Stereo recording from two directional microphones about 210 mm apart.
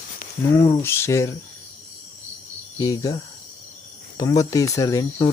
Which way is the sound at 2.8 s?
15° left (ahead or behind).